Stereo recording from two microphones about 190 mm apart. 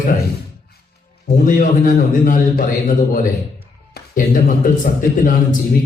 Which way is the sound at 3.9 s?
50° left (ahead or behind).